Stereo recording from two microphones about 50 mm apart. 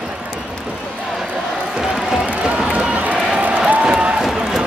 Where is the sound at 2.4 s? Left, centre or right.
Centre.